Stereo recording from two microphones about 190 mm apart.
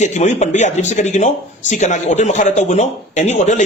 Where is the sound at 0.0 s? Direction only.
35° left (ahead or behind).